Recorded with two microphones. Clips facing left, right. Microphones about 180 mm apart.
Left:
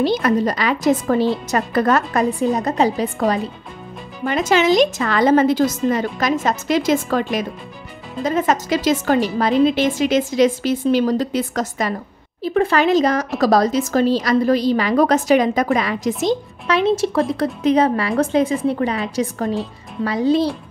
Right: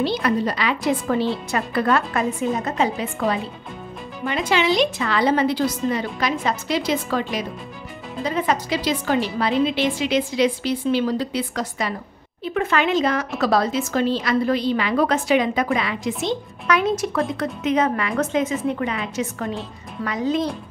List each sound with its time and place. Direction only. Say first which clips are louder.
0.0 s a woman's voice: left 4 dB; 45° left (ahead or behind)
16.6 s a woman's voice: left 3 dB; 30° left (ahead or behind)